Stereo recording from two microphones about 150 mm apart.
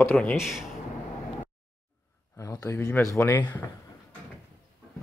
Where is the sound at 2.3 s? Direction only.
20° left (ahead or behind).